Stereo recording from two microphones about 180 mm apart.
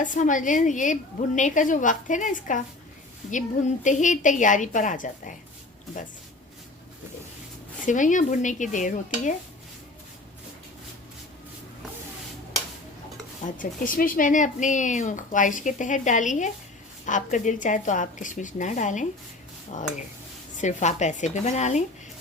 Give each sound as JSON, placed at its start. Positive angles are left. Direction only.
{"t": 0.0, "sound": "speech", "side_deg": 45}
{"t": 3.8, "sound": "speech", "side_deg": 45}
{"t": 7.9, "sound": "speech", "side_deg": 45}
{"t": 13.4, "sound": "speech", "side_deg": 50}